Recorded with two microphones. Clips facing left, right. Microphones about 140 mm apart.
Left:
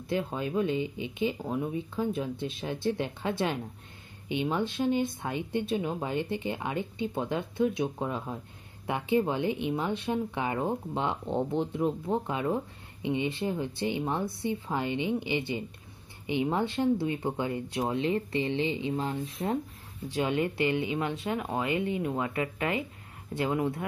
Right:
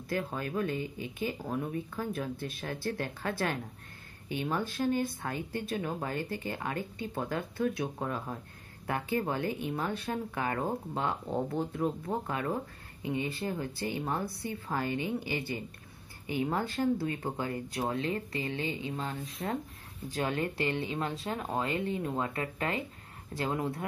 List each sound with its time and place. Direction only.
0.1 s speech: 20° left (ahead or behind)
20.1 s speech: 15° left (ahead or behind)
20.5 s speech: 35° right (ahead or behind)
23.3 s speech: 20° left (ahead or behind)